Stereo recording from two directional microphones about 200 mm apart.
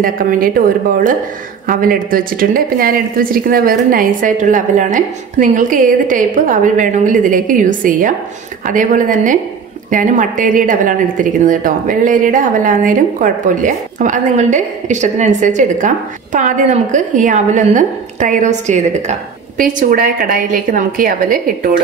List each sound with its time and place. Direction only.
0.0 s a woman's voice: 45° right (ahead or behind)